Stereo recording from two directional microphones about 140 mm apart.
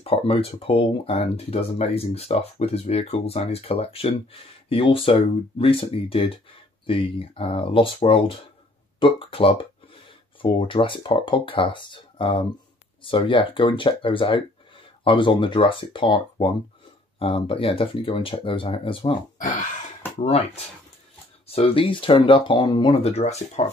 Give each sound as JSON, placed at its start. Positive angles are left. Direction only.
{"t": 0.0, "sound": "speech", "side_deg": 45}
{"t": 19.3, "sound": "speech", "side_deg": 65}
{"t": 20.2, "sound": "speech", "side_deg": 45}
{"t": 23.0, "sound": "speech", "side_deg": 50}